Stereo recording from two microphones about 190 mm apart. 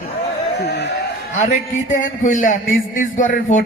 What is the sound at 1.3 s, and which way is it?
A man's voice, 40° left (ahead or behind).